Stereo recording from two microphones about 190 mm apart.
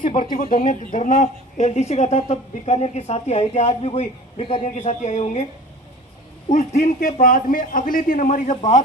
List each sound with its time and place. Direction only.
0.1 s a man's voice: 45° left (ahead or behind)
6.5 s a man's voice: 40° left (ahead or behind)